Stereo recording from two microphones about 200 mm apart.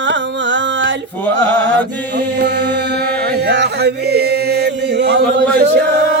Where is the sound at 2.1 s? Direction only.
60° right (ahead or behind).